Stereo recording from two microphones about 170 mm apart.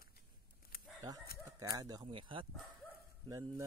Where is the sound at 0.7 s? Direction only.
60° left (ahead or behind).